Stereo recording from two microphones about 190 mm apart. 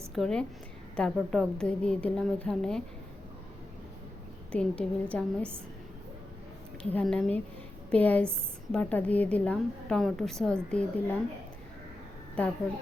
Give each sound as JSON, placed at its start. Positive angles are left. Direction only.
{"t": 0.1, "sound": "a woman's voice", "side_deg": 5}
{"t": 4.5, "sound": "a woman's voice", "side_deg": 5}
{"t": 6.9, "sound": "a woman's voice", "side_deg": 5}
{"t": 12.4, "sound": "a woman's voice", "side_deg": 10}